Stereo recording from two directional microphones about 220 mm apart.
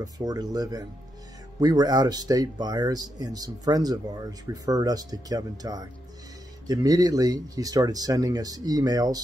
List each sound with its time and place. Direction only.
0.0 s speech: 15° right (ahead or behind)